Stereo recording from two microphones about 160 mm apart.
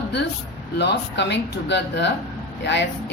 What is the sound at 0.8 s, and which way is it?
A woman's voice, 90° left.